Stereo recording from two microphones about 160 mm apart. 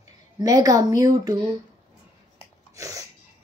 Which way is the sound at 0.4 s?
20° right (ahead or behind).